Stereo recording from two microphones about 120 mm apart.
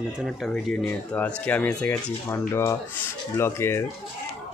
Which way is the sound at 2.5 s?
20° left (ahead or behind).